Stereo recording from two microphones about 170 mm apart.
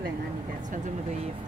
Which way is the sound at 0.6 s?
45° right (ahead or behind).